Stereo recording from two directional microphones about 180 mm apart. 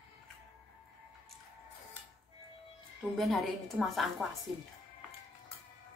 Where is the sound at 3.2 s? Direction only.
Centre (ahead or behind).